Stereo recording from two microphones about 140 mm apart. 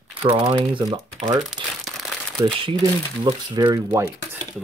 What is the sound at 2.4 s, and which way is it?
Speech, 35° right (ahead or behind).